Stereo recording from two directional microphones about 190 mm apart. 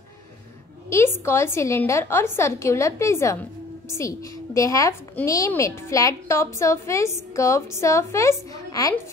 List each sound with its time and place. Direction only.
0.8 s a woman's voice: 15° left (ahead or behind)
4.6 s a woman's voice: 15° left (ahead or behind)